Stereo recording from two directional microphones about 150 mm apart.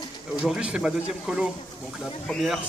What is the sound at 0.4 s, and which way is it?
Speech, 5° right (ahead or behind).